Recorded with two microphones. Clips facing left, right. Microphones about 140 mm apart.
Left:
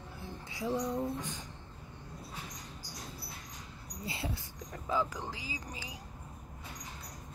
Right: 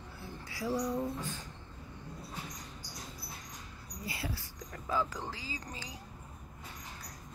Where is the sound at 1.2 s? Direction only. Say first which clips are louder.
Even; 15° left (ahead or behind).